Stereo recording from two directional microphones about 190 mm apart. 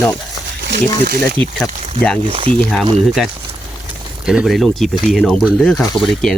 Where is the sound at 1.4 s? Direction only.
30° right (ahead or behind).